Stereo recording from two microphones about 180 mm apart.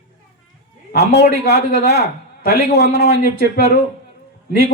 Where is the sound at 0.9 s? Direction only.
65° left (ahead or behind).